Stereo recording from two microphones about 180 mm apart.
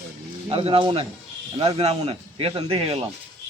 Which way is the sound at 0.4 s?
30° right (ahead or behind).